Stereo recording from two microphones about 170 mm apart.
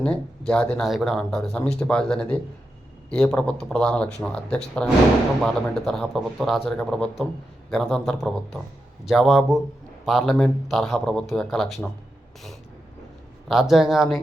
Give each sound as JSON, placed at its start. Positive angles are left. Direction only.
{"t": 0.0, "sound": "speech", "side_deg": 5}
{"t": 13.5, "sound": "speech", "side_deg": 0}